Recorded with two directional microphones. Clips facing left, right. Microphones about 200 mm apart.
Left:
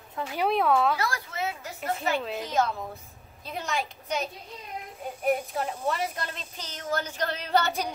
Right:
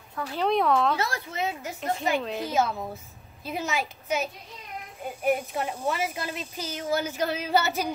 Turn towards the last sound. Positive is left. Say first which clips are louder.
# right 1 dB
turn(degrees=-5)  # may be behind; listen again after turning